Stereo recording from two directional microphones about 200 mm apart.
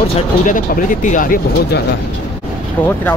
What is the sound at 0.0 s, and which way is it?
Speech, 40° left (ahead or behind).